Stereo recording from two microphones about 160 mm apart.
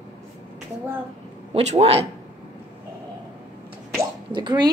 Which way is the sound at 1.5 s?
45° right (ahead or behind).